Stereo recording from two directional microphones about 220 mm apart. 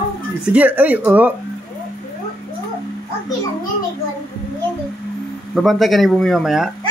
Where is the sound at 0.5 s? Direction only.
10° right (ahead or behind).